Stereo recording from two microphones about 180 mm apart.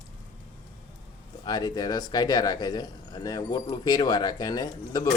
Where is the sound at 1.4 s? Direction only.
25° left (ahead or behind).